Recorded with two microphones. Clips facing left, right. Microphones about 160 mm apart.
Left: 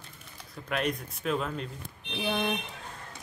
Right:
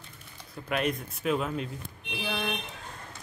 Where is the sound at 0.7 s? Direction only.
5° right (ahead or behind).